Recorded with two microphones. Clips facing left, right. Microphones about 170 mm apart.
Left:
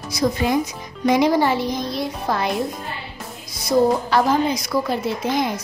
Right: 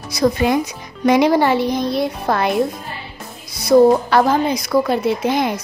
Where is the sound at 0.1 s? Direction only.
70° right (ahead or behind).